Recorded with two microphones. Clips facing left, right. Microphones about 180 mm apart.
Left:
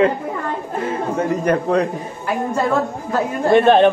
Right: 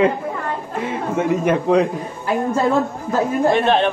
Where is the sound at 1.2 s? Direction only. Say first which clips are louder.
Right 1 dB; centre (ahead or behind).